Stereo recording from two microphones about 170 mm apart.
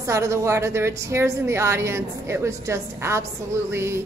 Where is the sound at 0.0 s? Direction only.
15° right (ahead or behind).